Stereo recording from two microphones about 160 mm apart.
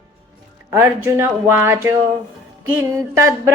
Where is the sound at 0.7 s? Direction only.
15° right (ahead or behind).